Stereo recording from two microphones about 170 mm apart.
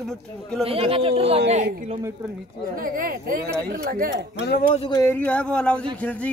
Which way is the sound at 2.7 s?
55° right (ahead or behind).